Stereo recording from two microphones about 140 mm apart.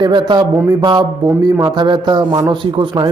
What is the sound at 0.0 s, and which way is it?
A man's voice, 35° right (ahead or behind).